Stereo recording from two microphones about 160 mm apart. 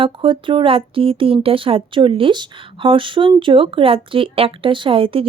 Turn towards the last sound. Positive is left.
turn(degrees=-35)  # may be behind; listen again after turning